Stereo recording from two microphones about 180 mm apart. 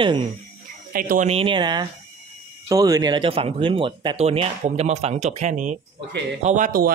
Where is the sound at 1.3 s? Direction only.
30° right (ahead or behind).